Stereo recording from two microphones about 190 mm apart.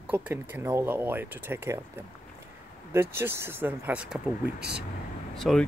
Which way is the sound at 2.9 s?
15° right (ahead or behind).